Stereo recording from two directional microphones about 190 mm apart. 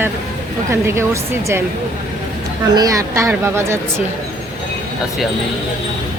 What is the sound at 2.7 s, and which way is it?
Speech, 15° right (ahead or behind).